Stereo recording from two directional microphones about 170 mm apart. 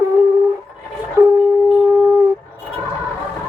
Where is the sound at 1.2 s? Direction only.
15° right (ahead or behind).